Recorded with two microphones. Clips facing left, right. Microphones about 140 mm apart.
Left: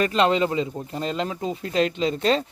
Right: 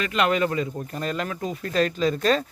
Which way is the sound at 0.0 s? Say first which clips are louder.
Left 3 dB; 30° left (ahead or behind).